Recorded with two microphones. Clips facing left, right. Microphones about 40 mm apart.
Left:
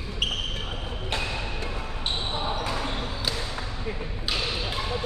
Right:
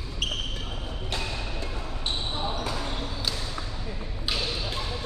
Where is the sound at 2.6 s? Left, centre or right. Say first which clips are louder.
Left 2 dB; left.